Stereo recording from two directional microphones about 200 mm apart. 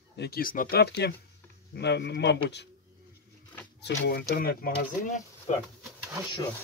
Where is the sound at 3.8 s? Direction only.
55° left (ahead or behind).